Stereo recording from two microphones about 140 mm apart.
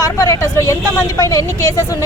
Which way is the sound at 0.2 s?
25° left (ahead or behind).